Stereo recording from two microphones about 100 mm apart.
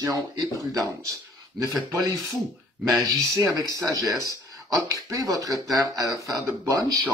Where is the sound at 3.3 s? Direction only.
35° right (ahead or behind).